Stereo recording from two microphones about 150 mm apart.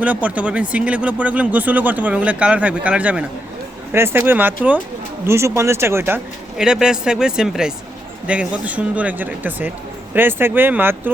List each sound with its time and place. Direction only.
0.0 s speech: 10° right (ahead or behind)
6.6 s speech: 5° right (ahead or behind)